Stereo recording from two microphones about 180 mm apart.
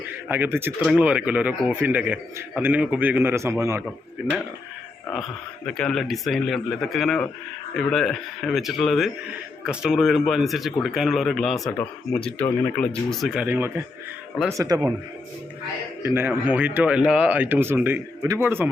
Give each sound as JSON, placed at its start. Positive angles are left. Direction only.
{"t": 0.3, "sound": "speech", "side_deg": -10}
{"t": 5.6, "sound": "a man's voice", "side_deg": 5}
{"t": 16.0, "sound": "speech", "side_deg": -10}